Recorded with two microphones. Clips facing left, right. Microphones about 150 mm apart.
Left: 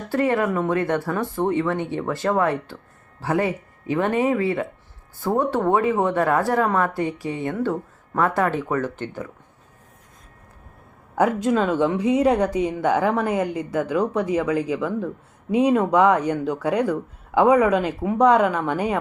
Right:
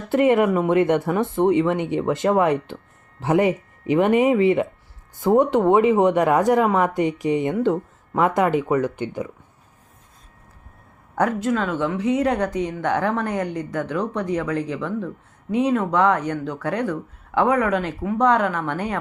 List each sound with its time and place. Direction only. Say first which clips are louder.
0.1 s speech: right 4 dB; 20° right (ahead or behind)
11.1 s speech: left 2 dB; 10° left (ahead or behind)